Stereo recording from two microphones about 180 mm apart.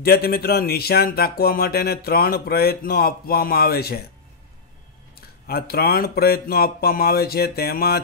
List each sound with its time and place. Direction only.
0.0 s speech: 55° left (ahead or behind)
5.1 s speech: 60° left (ahead or behind)